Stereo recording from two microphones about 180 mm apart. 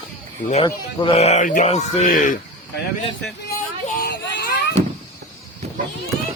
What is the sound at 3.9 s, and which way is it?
Children playing, 60° left (ahead or behind).